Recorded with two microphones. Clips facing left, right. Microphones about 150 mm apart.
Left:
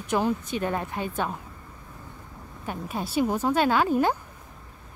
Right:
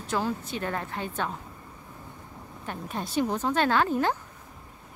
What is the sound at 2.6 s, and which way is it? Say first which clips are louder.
A woman's voice: left 3 dB; 10° left (ahead or behind).